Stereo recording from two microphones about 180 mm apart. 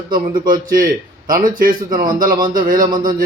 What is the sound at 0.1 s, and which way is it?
A man's voice, 50° right (ahead or behind).